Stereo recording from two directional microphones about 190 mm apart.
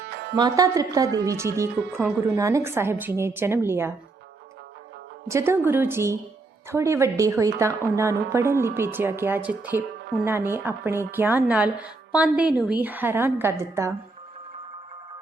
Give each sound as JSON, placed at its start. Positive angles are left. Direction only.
{"t": 0.1, "sound": "music", "side_deg": -60}
{"t": 0.3, "sound": "a woman's voice", "side_deg": -20}
{"t": 5.3, "sound": "a woman's voice", "side_deg": -15}